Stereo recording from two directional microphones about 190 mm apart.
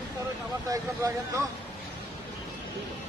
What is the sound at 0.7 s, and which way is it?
Speech, 15° right (ahead or behind).